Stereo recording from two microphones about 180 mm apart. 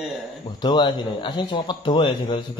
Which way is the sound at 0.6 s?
25° left (ahead or behind).